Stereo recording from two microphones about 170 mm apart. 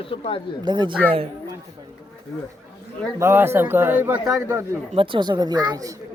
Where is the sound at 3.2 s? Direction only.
15° right (ahead or behind).